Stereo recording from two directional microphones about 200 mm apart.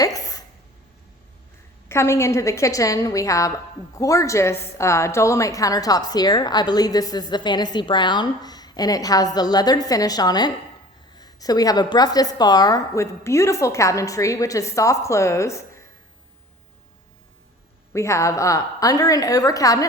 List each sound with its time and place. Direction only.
0.0 s a sound: 15° left (ahead or behind)
1.9 s a woman's voice: 15° left (ahead or behind)
17.9 s a woman's voice: 15° left (ahead or behind)